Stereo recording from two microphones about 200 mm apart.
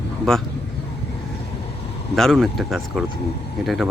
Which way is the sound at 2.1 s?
Centre (ahead or behind).